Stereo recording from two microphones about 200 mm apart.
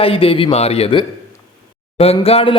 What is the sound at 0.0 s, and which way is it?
Speech, 30° left (ahead or behind).